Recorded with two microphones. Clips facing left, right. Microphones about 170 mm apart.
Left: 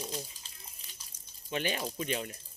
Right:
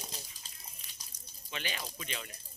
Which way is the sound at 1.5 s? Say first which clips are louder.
Left 8 dB; 45° left (ahead or behind).